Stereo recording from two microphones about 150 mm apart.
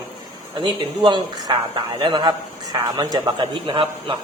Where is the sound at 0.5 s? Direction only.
30° right (ahead or behind).